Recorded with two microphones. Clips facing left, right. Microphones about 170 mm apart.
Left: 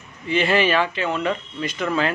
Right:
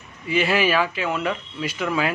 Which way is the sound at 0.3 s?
5° right (ahead or behind).